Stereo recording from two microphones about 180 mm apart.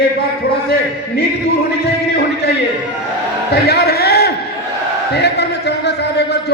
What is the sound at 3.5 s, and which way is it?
A man's voice, 65° left (ahead or behind).